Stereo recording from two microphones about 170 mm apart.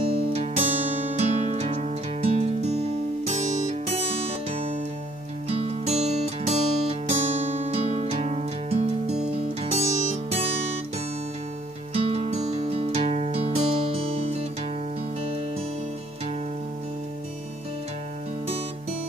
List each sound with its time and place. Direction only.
0.0 s music: 35° right (ahead or behind)
11.9 s music: 35° right (ahead or behind)